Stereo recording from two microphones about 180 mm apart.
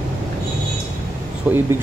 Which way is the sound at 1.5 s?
5° right (ahead or behind).